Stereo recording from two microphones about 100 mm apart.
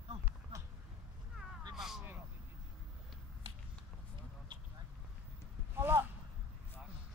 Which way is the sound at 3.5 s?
70° right (ahead or behind).